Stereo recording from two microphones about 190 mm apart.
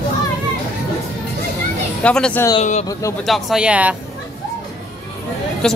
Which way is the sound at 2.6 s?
35° left (ahead or behind).